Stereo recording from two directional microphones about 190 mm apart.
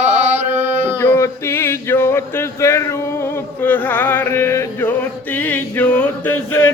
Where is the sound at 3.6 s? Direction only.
10° left (ahead or behind).